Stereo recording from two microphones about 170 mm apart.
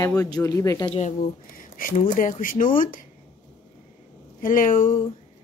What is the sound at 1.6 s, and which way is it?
Speech, 55° left (ahead or behind).